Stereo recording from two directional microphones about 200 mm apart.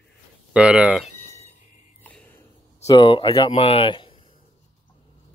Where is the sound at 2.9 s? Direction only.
25° left (ahead or behind).